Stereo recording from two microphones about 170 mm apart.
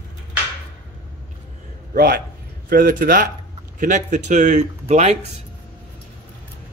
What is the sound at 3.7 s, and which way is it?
Speech, 45° right (ahead or behind).